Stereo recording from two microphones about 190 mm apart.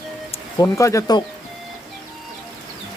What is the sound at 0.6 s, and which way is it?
Speech, 15° left (ahead or behind).